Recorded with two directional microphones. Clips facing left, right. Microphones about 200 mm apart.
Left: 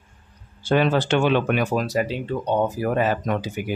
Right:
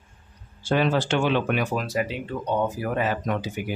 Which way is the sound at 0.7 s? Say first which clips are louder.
Left 3 dB; 60° left (ahead or behind).